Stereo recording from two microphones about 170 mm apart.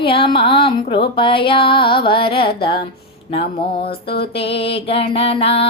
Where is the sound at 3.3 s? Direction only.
30° left (ahead or behind).